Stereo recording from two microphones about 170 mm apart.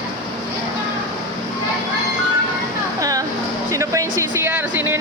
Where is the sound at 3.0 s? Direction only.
20° right (ahead or behind).